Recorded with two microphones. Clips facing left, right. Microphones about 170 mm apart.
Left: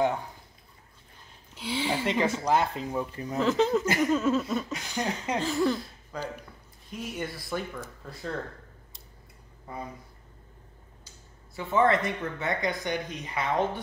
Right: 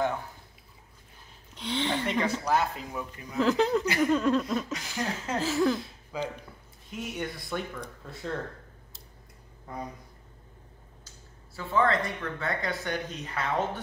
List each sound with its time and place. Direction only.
1.5 s a sound: 5° left (ahead or behind)
2.1 s speech: 10° left (ahead or behind)
2.6 s speech: 30° left (ahead or behind)
3.3 s speech: centre (ahead or behind)
11.5 s speech: 25° left (ahead or behind)